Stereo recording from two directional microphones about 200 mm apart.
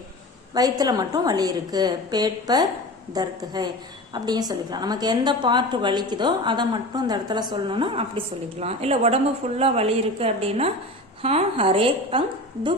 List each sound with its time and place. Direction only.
0.5 s a woman's voice: 20° right (ahead or behind)